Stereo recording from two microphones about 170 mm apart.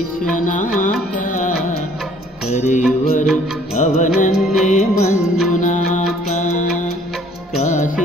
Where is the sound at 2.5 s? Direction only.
40° left (ahead or behind).